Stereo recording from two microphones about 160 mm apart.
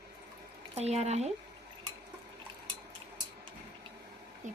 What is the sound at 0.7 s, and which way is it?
Speech, 40° right (ahead or behind).